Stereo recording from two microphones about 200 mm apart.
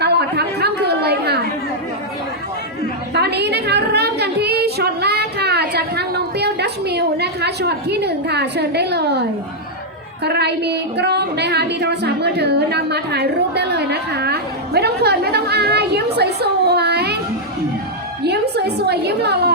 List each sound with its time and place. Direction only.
0.0 s chatter: 55° right (ahead or behind)
3.2 s a woman's voice: 55° right (ahead or behind)
10.2 s a woman's voice: 55° right (ahead or behind)
16.1 s a sound: 55° right (ahead or behind)
18.2 s a woman's voice: 55° right (ahead or behind)